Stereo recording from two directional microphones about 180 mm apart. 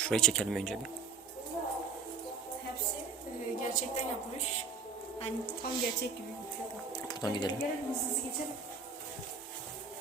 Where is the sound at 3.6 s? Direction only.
45° left (ahead or behind).